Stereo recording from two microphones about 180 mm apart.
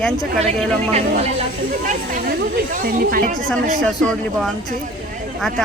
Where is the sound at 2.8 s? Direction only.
55° right (ahead or behind).